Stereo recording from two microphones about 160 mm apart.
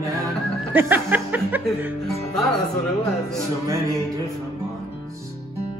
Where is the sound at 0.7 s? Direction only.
10° right (ahead or behind).